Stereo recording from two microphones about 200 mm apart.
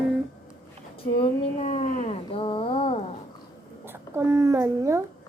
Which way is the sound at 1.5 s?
35° left (ahead or behind).